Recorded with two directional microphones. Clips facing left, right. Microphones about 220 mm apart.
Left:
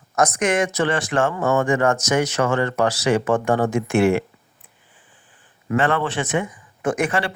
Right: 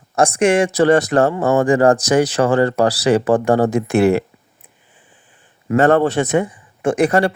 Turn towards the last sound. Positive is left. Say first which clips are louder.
# right 7 dB
turn(degrees=-40)  # may be behind; listen again after turning